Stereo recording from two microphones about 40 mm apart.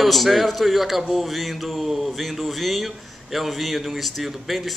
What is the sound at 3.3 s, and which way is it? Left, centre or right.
Speech, centre.